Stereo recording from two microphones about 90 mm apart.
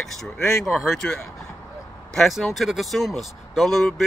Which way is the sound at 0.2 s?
Centre (ahead or behind).